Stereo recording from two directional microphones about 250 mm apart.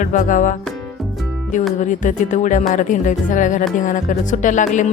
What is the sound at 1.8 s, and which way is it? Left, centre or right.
Music, left.